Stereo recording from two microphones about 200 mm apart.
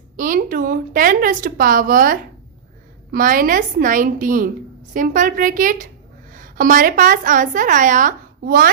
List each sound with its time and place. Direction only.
0.2 s a woman's voice: 40° right (ahead or behind)